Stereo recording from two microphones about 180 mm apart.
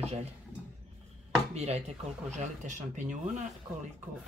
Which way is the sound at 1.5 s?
35° right (ahead or behind).